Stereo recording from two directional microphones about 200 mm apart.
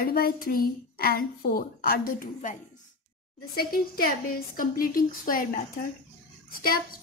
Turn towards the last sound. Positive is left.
turn(degrees=45)  # may be behind; listen again after turning